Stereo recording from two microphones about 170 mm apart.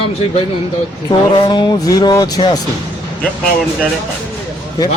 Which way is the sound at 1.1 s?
25° left (ahead or behind).